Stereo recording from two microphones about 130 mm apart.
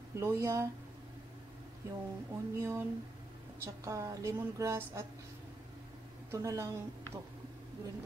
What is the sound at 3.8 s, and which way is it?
Speech, 25° right (ahead or behind).